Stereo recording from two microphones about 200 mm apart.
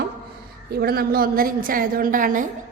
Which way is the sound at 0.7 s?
50° right (ahead or behind).